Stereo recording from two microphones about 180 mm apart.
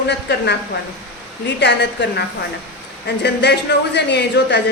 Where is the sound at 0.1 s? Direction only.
70° left (ahead or behind).